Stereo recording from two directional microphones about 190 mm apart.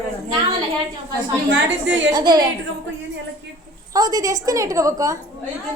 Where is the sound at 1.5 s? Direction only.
70° right (ahead or behind).